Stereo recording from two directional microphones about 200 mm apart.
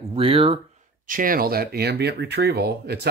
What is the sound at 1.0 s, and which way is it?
Speech, 45° right (ahead or behind).